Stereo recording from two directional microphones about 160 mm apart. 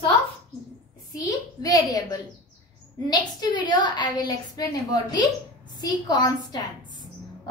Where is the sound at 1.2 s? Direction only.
20° left (ahead or behind).